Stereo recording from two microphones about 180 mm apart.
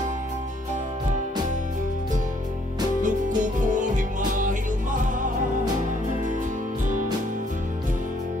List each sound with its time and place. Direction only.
3.0 s music: 45° right (ahead or behind)